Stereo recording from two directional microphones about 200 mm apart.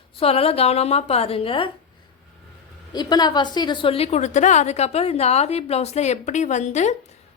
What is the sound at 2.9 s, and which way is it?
A woman's voice, 20° left (ahead or behind).